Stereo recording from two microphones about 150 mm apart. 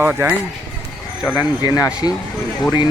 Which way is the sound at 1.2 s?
25° left (ahead or behind).